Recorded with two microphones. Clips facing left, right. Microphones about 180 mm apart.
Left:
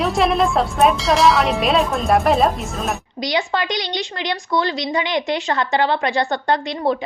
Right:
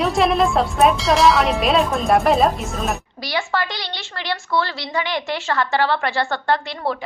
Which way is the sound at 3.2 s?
20° left (ahead or behind).